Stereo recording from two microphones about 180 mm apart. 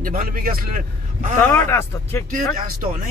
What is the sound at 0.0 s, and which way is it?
Speech, 50° right (ahead or behind).